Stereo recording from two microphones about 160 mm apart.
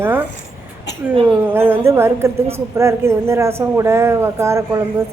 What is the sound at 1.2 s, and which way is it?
Speech, 10° right (ahead or behind).